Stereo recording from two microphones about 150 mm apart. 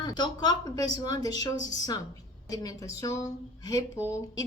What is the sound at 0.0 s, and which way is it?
A woman's voice, 30° left (ahead or behind).